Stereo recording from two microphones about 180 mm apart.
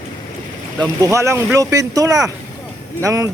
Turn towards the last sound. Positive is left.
turn(degrees=-15)  # may be behind; listen again after turning